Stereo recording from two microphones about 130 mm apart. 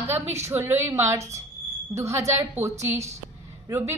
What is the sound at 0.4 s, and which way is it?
A woman's voice, 20° right (ahead or behind).